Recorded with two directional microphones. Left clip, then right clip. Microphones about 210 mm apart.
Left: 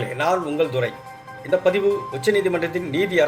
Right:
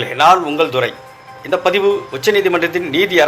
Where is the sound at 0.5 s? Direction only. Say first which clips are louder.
Right 6 dB; 35° right (ahead or behind).